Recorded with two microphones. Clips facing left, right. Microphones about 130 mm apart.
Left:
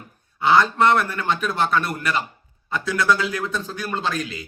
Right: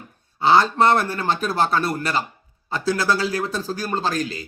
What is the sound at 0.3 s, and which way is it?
Speech, 30° right (ahead or behind).